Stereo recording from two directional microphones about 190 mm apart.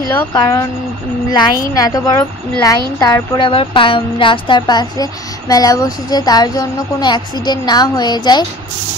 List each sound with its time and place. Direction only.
0.1 s a woman's voice: 15° left (ahead or behind)